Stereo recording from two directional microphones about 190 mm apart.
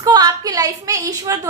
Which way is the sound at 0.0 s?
20° right (ahead or behind).